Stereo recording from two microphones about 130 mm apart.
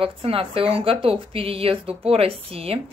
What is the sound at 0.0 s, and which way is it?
A woman's voice, 45° right (ahead or behind).